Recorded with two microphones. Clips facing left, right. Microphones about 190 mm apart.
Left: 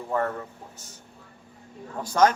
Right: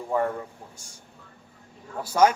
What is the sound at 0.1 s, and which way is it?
Speech, 10° right (ahead or behind).